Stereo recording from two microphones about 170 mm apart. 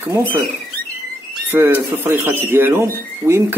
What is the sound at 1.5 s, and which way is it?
Speech, 15° right (ahead or behind).